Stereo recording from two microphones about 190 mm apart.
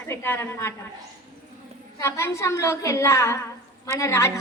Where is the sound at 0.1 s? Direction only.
10° left (ahead or behind).